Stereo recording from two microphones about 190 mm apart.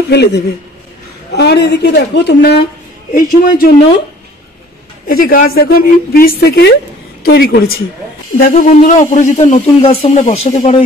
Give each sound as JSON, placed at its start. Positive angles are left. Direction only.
{"t": 0.1, "sound": "speech", "side_deg": 60}
{"t": 3.1, "sound": "a woman's voice", "side_deg": 45}
{"t": 5.0, "sound": "a woman's voice", "side_deg": 50}